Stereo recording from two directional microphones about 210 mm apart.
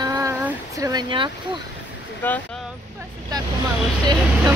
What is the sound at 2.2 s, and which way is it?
Speech, 10° left (ahead or behind).